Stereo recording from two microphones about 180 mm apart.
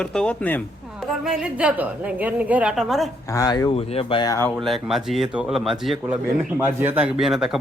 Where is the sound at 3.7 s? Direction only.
30° left (ahead or behind).